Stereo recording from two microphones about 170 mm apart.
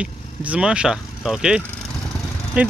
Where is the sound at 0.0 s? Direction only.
5° right (ahead or behind).